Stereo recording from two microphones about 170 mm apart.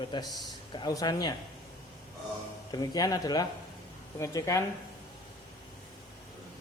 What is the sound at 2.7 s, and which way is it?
A man's voice, 25° left (ahead or behind).